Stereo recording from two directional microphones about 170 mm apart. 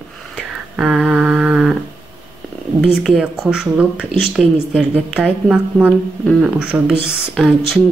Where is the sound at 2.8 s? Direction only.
Centre (ahead or behind).